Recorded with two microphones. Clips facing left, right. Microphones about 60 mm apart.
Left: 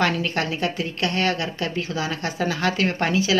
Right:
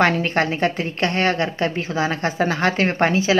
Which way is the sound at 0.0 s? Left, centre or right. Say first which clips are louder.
Right 4 dB; right.